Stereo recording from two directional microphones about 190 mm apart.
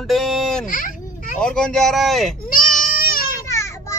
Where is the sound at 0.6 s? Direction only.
45° left (ahead or behind).